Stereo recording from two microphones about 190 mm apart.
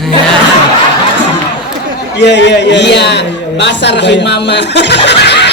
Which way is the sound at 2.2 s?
65° left (ahead or behind).